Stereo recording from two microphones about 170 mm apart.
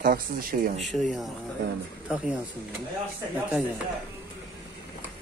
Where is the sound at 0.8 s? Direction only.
Centre (ahead or behind).